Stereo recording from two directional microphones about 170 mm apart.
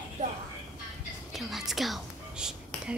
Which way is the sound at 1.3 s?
Centre (ahead or behind).